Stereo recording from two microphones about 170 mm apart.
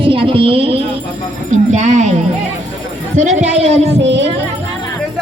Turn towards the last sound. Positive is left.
turn(degrees=-40)  # may be behind; listen again after turning